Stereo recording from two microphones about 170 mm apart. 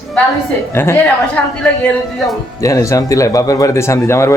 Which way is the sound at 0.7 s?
15° left (ahead or behind).